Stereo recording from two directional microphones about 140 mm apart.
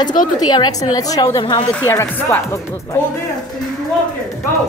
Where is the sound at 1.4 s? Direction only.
35° left (ahead or behind).